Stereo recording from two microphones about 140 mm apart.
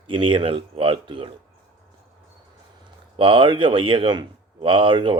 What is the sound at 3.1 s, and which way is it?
Speech, 40° right (ahead or behind).